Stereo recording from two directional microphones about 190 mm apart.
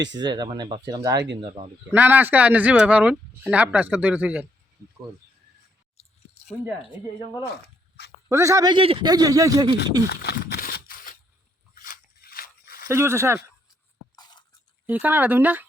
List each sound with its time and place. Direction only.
0.2 s a man's voice: 20° right (ahead or behind)
1.9 s speech: 10° right (ahead or behind)
8.3 s a man's voice: 15° right (ahead or behind)
10.1 s a sound: 60° left (ahead or behind)
11.7 s crunch: 45° left (ahead or behind)
12.9 s speech: 15° right (ahead or behind)
14.2 s a sound: 20° left (ahead or behind)
14.8 s speech: 10° right (ahead or behind)